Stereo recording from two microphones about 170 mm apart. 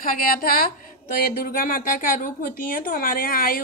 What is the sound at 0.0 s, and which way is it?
A woman's voice, 60° left (ahead or behind).